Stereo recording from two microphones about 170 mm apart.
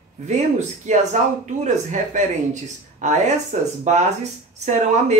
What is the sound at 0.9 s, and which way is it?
Speech, 45° right (ahead or behind).